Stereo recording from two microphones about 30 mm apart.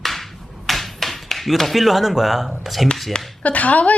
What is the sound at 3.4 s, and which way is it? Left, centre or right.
Speech, left.